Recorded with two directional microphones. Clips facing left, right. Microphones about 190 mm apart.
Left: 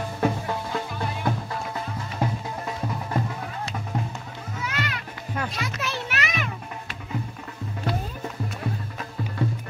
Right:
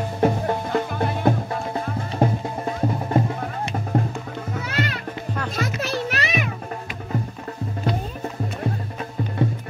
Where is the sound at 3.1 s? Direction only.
20° right (ahead or behind).